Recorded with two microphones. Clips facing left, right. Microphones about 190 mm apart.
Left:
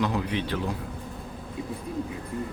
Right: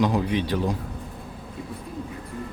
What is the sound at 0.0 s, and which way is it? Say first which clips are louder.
Speech: right 4 dB; 15° right (ahead or behind).